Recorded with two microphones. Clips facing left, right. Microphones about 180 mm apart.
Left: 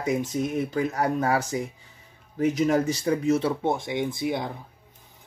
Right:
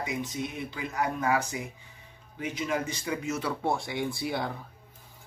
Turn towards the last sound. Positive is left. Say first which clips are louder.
# left 4 dB
turn(degrees=20)  # may be behind; listen again after turning